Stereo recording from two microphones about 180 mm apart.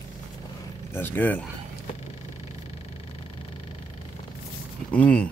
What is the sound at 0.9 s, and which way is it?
Speech, 10° left (ahead or behind).